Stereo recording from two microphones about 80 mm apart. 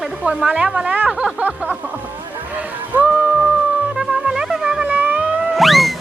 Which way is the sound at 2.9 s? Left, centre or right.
Right.